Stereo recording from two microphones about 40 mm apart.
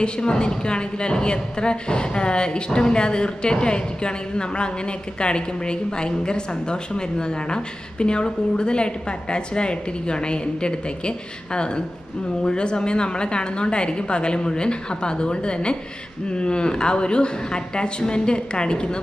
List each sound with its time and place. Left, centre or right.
0.0 s a woman's voice: left